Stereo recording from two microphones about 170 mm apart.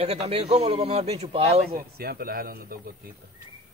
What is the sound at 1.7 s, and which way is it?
A man's voice, 65° right (ahead or behind).